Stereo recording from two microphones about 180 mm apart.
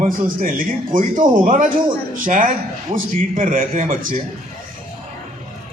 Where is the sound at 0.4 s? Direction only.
50° right (ahead or behind).